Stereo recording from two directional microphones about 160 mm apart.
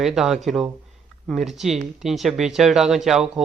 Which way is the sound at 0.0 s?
Centre (ahead or behind).